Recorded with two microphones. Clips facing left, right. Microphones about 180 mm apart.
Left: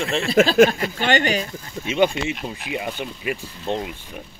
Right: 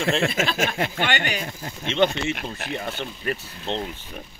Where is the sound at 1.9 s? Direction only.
10° left (ahead or behind).